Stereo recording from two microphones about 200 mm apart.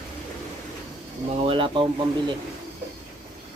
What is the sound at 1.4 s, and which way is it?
Speech, 25° right (ahead or behind).